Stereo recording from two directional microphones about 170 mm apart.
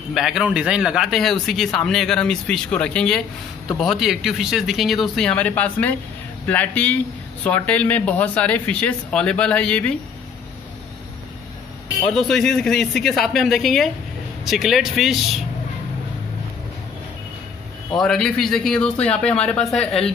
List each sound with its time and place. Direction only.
0.1 s speech: centre (ahead or behind)
12.1 s speech: centre (ahead or behind)
17.9 s speech: 5° left (ahead or behind)